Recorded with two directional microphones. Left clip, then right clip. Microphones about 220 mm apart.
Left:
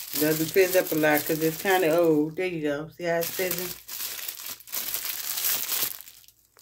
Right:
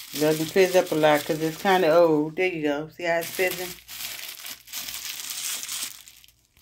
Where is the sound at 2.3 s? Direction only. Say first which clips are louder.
Right 3 dB; 20° right (ahead or behind).